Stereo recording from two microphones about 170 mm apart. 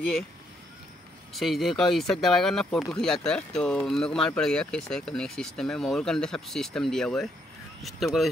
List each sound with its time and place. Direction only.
1.3 s speech: centre (ahead or behind)